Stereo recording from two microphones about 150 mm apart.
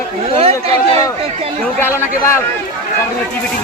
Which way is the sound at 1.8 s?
15° left (ahead or behind).